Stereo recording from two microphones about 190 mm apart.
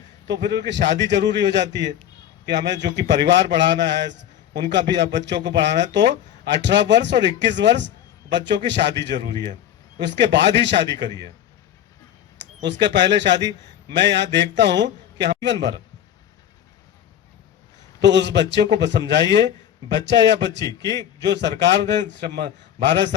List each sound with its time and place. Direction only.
0.3 s a man's voice: 60° right (ahead or behind)
12.4 s a sound: 70° right (ahead or behind)
12.8 s a man's voice: 65° right (ahead or behind)
18.0 s a man's voice: 65° right (ahead or behind)
20.6 s a man's voice: 20° left (ahead or behind)
21.3 s a man's voice: 65° right (ahead or behind)